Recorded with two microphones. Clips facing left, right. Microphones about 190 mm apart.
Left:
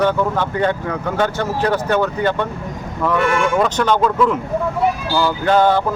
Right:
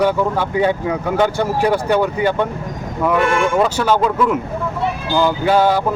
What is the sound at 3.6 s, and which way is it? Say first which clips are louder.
Speech: right 1 dB; 5° right (ahead or behind).